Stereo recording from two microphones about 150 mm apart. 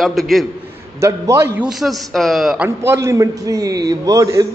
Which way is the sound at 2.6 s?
15° right (ahead or behind).